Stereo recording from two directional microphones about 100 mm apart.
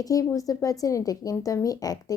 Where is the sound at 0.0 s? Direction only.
35° left (ahead or behind).